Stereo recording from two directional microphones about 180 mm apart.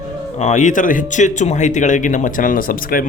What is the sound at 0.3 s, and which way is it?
Speech, 40° left (ahead or behind).